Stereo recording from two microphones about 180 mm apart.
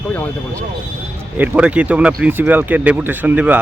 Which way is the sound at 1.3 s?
10° right (ahead or behind).